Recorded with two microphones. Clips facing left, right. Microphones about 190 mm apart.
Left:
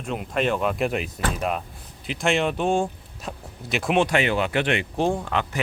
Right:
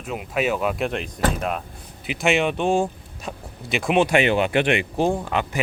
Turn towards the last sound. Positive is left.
turn(degrees=-10)  # may be behind; listen again after turning